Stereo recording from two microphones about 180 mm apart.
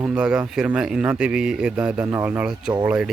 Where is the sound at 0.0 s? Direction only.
5° right (ahead or behind).